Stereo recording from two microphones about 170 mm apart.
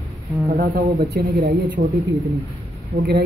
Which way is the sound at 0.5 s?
70° right (ahead or behind).